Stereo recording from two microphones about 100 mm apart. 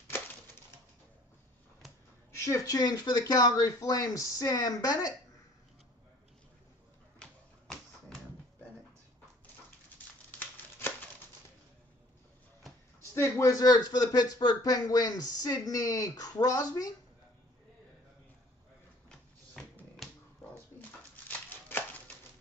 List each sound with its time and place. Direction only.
2.3 s speech: 30° left (ahead or behind)
7.2 s typewriter: 5° left (ahead or behind)
13.1 s speech: 25° left (ahead or behind)
19.0 s a sound: 10° left (ahead or behind)
21.3 s chopping: 20° left (ahead or behind)